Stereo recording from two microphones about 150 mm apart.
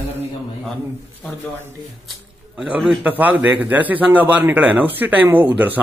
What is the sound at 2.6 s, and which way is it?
A man's voice, 5° right (ahead or behind).